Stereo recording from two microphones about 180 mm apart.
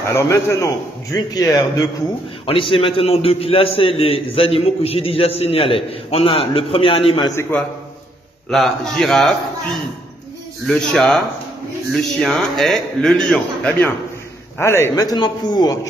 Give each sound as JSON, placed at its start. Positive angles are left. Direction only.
{"t": 0.0, "sound": "a man's voice", "side_deg": 15}
{"t": 8.5, "sound": "a man's voice", "side_deg": 0}
{"t": 10.7, "sound": "a man's voice", "side_deg": 5}